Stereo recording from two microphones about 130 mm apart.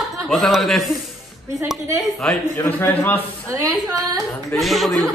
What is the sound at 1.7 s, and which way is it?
Speech, 25° right (ahead or behind).